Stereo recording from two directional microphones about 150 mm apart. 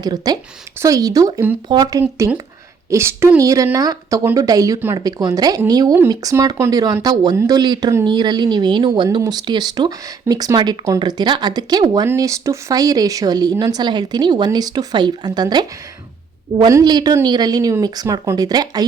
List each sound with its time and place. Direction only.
0.0 s speech: 25° right (ahead or behind)